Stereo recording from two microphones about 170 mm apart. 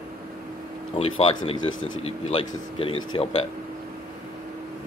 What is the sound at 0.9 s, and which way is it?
Speech, 35° left (ahead or behind).